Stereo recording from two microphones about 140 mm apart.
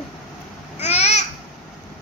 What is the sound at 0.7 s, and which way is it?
Babbling, 50° left (ahead or behind).